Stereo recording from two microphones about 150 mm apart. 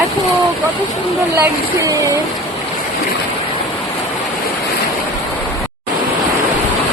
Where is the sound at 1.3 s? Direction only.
20° right (ahead or behind).